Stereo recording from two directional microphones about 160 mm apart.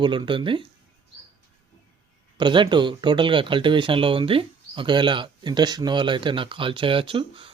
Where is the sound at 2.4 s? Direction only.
30° right (ahead or behind).